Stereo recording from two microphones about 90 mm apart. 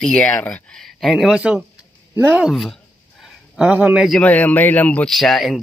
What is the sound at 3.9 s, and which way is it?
Speech, centre (ahead or behind).